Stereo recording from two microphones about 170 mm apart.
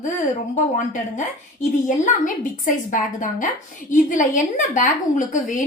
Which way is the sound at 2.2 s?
50° left (ahead or behind).